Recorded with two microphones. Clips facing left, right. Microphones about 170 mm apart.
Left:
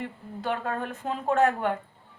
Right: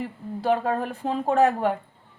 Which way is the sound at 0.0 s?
35° right (ahead or behind).